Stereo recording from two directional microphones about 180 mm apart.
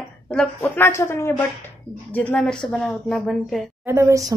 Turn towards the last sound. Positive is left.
turn(degrees=-15)  # may be behind; listen again after turning